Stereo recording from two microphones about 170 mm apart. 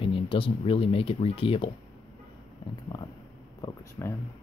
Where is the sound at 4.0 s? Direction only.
15° left (ahead or behind).